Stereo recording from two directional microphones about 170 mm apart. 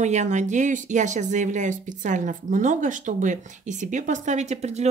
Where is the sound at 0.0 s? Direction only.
45° right (ahead or behind).